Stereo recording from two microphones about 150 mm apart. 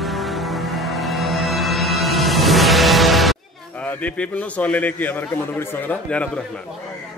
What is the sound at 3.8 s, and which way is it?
A man's voice, 10° left (ahead or behind).